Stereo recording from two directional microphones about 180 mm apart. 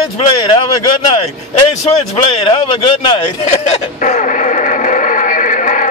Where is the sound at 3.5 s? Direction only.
40° left (ahead or behind).